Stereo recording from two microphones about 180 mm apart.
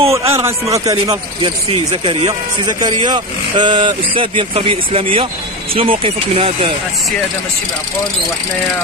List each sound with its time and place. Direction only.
0.1 s a man's voice: 15° right (ahead or behind)
1.7 s speech: 30° right (ahead or behind)